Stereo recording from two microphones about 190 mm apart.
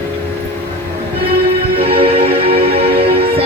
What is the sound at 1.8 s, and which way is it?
Music, 30° right (ahead or behind).